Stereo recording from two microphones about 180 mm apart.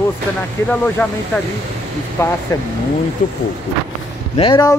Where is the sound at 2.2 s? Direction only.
15° left (ahead or behind).